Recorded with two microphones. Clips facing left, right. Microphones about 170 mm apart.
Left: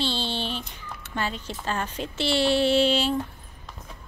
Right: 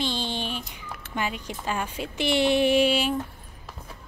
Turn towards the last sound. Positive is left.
turn(degrees=-10)  # may be behind; listen again after turning